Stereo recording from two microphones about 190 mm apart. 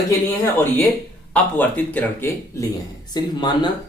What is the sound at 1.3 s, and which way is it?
Speech, 10° left (ahead or behind).